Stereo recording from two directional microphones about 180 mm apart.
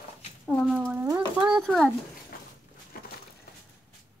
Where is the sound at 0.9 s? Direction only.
15° right (ahead or behind).